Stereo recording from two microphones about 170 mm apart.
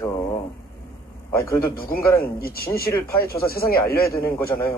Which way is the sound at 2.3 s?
60° left (ahead or behind).